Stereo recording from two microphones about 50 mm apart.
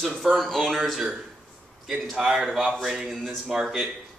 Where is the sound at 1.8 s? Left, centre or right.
Centre.